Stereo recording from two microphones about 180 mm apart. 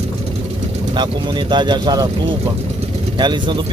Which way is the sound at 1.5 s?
25° right (ahead or behind).